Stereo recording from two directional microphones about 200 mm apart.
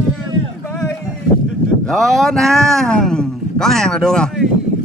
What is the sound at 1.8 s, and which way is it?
A man's voice, centre (ahead or behind).